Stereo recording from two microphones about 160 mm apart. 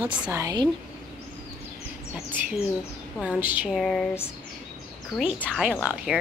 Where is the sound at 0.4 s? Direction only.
25° right (ahead or behind).